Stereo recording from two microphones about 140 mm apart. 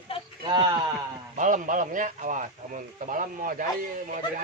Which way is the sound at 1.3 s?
65° right (ahead or behind).